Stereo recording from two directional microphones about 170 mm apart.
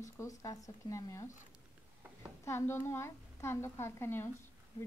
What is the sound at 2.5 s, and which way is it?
Speech, 15° left (ahead or behind).